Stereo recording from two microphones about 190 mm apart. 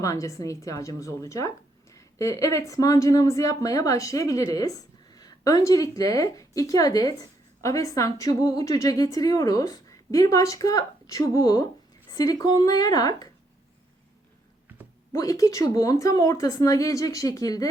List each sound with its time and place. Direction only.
0.0 s a woman's voice: 15° left (ahead or behind)
14.7 s a sound: 10° right (ahead or behind)
15.1 s a woman's voice: 20° left (ahead or behind)